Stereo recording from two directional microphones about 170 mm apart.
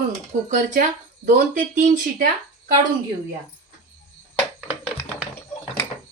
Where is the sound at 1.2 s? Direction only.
50° right (ahead or behind).